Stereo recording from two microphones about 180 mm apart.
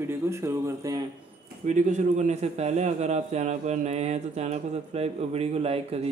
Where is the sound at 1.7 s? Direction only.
40° right (ahead or behind).